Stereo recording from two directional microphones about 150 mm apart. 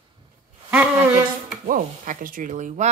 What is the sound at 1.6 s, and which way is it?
Speech, 60° right (ahead or behind).